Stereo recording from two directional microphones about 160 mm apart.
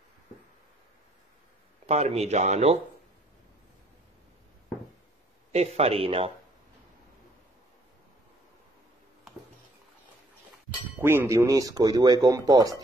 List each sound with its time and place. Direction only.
1.9 s speech: 40° right (ahead or behind)
5.5 s speech: 40° right (ahead or behind)
11.0 s speech: 15° right (ahead or behind)